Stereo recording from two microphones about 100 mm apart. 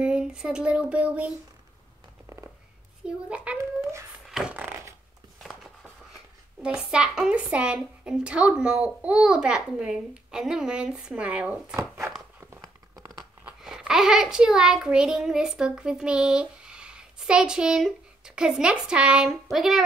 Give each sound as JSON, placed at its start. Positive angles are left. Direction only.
{"t": 0.0, "sound": "speech", "side_deg": -10}
{"t": 3.3, "sound": "a woman's voice", "side_deg": -10}
{"t": 4.3, "sound": "a sound", "side_deg": -5}
{"t": 4.6, "sound": "a sound", "side_deg": -20}
{"t": 5.4, "sound": "a sound", "side_deg": 0}
{"t": 6.6, "sound": "a woman's voice", "side_deg": -10}
{"t": 11.7, "sound": "speech", "side_deg": -25}
{"t": 12.6, "sound": "crumpling", "side_deg": -40}
{"t": 13.6, "sound": "a child's voice", "side_deg": -5}